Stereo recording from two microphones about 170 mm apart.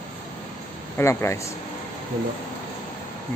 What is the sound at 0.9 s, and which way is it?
Speech, 15° left (ahead or behind).